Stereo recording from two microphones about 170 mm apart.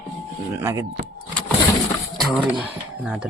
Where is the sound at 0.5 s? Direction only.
15° right (ahead or behind).